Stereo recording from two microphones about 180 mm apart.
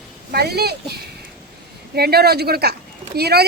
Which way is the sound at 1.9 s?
60° right (ahead or behind).